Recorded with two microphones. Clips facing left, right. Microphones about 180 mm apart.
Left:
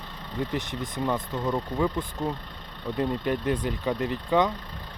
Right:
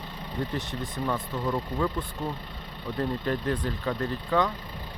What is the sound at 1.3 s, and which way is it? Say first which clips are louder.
Speech: left 1 dB; 10° left (ahead or behind).